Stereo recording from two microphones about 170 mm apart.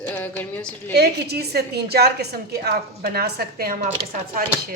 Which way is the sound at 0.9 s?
75° right (ahead or behind).